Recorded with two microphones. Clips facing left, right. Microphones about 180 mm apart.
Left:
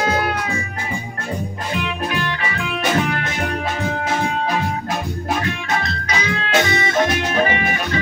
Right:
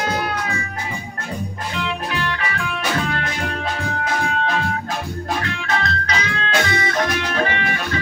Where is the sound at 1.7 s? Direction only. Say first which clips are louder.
Left 1 dB; 20° left (ahead or behind).